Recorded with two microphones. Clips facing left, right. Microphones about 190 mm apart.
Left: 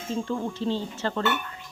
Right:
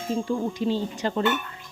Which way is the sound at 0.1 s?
10° right (ahead or behind).